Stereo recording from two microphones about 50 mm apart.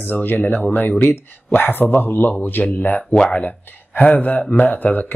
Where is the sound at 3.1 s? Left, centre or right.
Centre.